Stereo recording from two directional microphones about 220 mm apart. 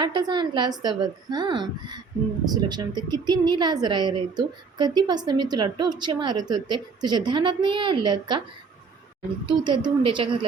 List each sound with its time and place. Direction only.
0.0 s a woman's voice: 20° right (ahead or behind)
9.5 s a woman's voice: 20° right (ahead or behind)